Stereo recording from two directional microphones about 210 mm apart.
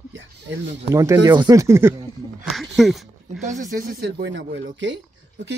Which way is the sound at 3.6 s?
40° right (ahead or behind).